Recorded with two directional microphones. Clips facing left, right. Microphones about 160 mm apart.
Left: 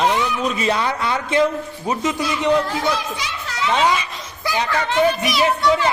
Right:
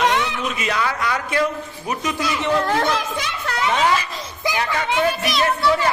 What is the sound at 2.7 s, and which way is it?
Speech, 60° right (ahead or behind).